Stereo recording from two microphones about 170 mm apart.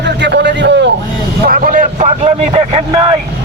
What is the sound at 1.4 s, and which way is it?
A man's voice, 55° right (ahead or behind).